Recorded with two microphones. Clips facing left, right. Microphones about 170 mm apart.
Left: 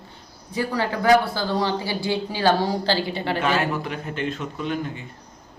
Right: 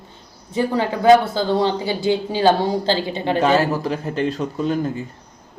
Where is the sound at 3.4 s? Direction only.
35° right (ahead or behind).